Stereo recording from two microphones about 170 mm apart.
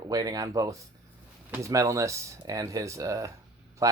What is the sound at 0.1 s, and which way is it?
Speech, 20° right (ahead or behind).